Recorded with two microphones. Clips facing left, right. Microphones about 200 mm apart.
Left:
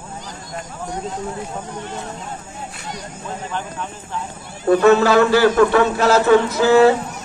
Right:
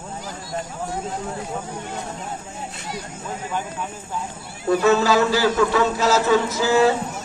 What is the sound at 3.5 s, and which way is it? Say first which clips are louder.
Speech: right 1 dB; 10° right (ahead or behind).